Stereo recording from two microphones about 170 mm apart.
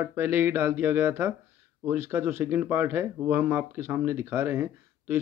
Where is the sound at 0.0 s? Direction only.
15° right (ahead or behind).